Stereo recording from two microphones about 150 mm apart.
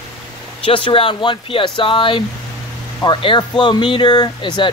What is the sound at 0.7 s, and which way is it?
Speech, 35° left (ahead or behind).